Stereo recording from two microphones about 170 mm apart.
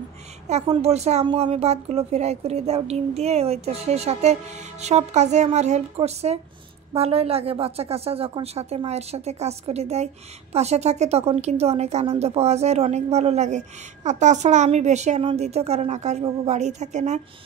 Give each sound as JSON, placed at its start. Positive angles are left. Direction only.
{"t": 0.5, "sound": "a woman's voice", "side_deg": -40}